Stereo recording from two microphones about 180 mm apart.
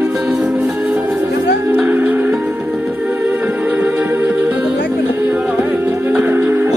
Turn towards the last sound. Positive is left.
turn(degrees=-15)  # may be behind; listen again after turning